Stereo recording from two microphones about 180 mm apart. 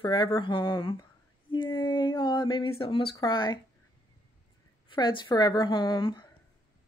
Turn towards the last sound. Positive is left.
turn(degrees=25)  # may be behind; listen again after turning